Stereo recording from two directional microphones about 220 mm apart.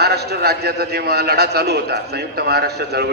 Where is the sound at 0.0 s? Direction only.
45° right (ahead or behind).